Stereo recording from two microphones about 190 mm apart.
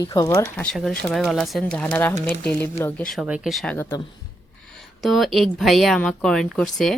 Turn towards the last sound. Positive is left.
turn(degrees=0)  # may be behind; listen again after turning